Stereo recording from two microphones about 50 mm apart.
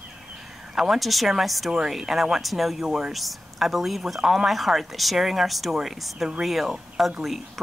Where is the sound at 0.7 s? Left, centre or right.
Centre.